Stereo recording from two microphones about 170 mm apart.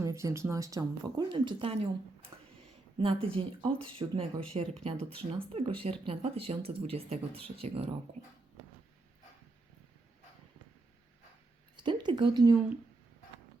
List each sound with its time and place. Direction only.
0.0 s speech: 20° right (ahead or behind); by 7.9 s 35° right (ahead or behind)
11.8 s speech: 25° right (ahead or behind)